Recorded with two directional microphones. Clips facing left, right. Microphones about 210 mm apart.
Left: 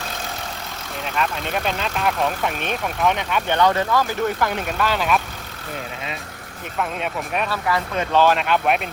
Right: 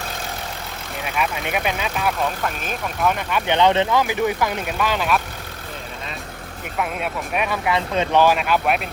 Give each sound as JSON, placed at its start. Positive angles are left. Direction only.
{"t": 1.0, "sound": "speech", "side_deg": -10}
{"t": 3.4, "sound": "speech", "side_deg": -20}
{"t": 6.7, "sound": "speech", "side_deg": -5}
{"t": 7.5, "sound": "speech", "side_deg": -15}